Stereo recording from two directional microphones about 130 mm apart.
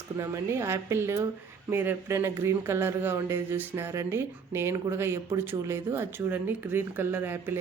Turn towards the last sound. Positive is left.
turn(degrees=-15)  # may be behind; listen again after turning